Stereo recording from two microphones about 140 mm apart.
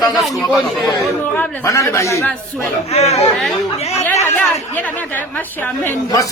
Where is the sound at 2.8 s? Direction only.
50° left (ahead or behind).